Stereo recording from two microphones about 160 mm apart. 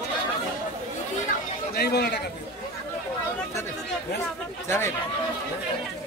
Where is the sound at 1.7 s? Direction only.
90° left.